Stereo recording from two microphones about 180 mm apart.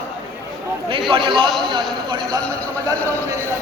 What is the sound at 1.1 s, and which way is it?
A man's voice, 25° right (ahead or behind).